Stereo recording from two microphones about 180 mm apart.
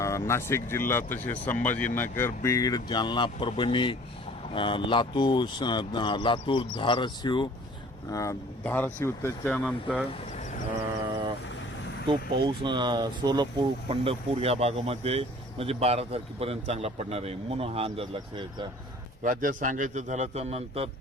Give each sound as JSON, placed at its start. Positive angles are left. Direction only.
{"t": 0.0, "sound": "speech", "side_deg": 15}
{"t": 12.0, "sound": "speech", "side_deg": -25}
{"t": 19.2, "sound": "speech", "side_deg": -45}